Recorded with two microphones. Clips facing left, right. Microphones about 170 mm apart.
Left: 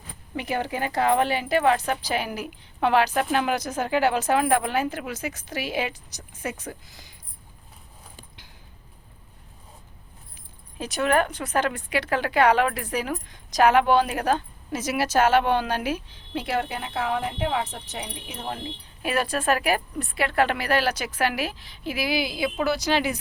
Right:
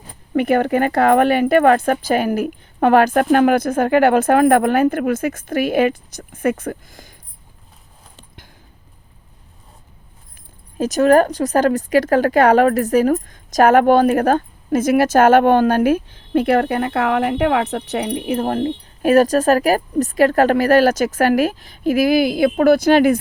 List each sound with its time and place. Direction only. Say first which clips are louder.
0.3 s speech: right 12 dB; 55° right (ahead or behind)
10.8 s speech: right 10 dB; 45° right (ahead or behind)